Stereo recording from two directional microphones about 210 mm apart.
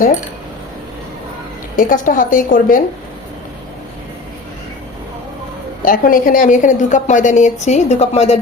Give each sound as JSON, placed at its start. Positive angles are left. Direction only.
{"t": 1.7, "sound": "a woman's voice", "side_deg": 40}
{"t": 5.8, "sound": "a woman's voice", "side_deg": 40}